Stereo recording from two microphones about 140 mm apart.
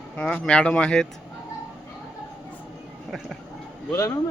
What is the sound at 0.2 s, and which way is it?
Speech, 5° left (ahead or behind).